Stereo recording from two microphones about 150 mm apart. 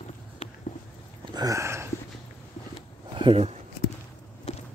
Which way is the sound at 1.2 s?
25° right (ahead or behind).